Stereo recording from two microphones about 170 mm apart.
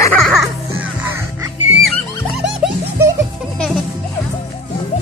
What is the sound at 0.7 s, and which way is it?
Music, 15° right (ahead or behind).